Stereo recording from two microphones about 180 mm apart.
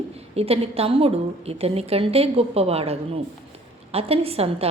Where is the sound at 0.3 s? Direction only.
35° right (ahead or behind).